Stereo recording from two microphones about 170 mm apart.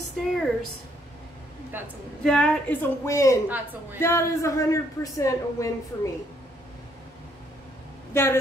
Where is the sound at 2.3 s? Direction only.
5° left (ahead or behind).